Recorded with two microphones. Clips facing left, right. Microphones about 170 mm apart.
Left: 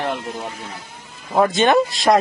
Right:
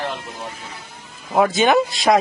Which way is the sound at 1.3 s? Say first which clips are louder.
Even; 5° right (ahead or behind).